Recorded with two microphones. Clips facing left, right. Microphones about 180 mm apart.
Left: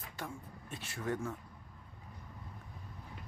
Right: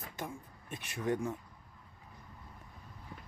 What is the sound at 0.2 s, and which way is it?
Speech, 20° right (ahead or behind).